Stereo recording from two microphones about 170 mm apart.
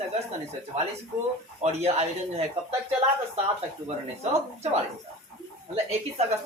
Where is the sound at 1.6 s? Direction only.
40° right (ahead or behind).